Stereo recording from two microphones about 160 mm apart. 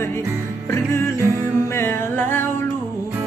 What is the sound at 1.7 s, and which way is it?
Music, 15° left (ahead or behind).